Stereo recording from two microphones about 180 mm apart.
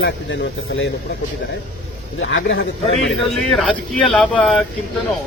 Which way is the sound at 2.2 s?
90° left.